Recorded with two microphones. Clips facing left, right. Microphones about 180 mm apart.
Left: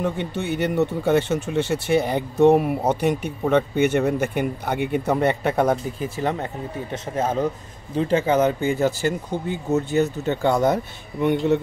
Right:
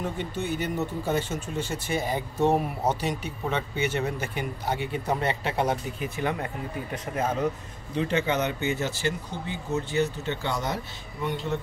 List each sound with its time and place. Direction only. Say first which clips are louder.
0.2 s speech: left 5 dB; 70° left (ahead or behind); by 6.0 s 50° left (ahead or behind)
6.1 s speech: left 3 dB; 30° left (ahead or behind); by 10.8 s 50° left (ahead or behind)
11.2 s speech: left 10 dB; 70° left (ahead or behind)